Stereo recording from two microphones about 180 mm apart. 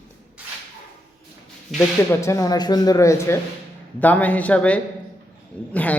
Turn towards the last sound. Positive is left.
turn(degrees=10)  # may be behind; listen again after turning